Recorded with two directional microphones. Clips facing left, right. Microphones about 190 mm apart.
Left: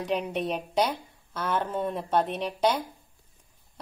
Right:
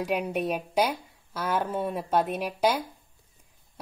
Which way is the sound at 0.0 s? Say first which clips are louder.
Right 1 dB; 10° right (ahead or behind).